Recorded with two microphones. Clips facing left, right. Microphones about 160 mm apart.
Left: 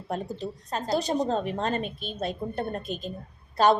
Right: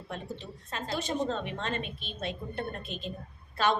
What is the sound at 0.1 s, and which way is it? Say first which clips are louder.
Speech: left 8 dB; 40° left (ahead or behind).